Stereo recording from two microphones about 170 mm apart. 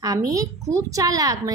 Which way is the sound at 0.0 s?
20° right (ahead or behind).